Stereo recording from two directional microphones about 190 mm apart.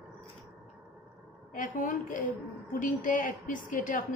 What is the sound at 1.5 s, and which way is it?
A woman's voice, 45° left (ahead or behind).